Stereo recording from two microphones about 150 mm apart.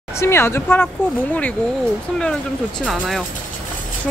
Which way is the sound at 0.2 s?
15° left (ahead or behind).